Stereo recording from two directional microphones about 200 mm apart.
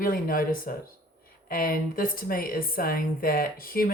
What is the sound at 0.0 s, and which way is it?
Speech, 45° left (ahead or behind).